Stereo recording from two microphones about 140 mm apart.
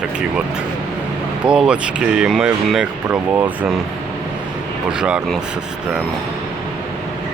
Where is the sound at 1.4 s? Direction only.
5° right (ahead or behind).